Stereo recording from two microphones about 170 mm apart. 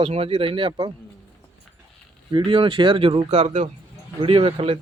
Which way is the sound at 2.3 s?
30° right (ahead or behind).